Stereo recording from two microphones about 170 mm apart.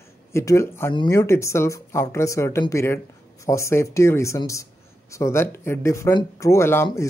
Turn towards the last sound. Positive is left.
turn(degrees=15)  # may be behind; listen again after turning